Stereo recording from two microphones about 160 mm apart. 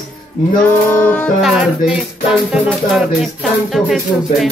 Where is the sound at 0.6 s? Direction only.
15° left (ahead or behind).